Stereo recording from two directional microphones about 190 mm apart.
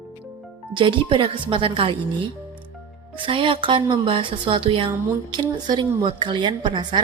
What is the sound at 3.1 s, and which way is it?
Speech, 25° right (ahead or behind).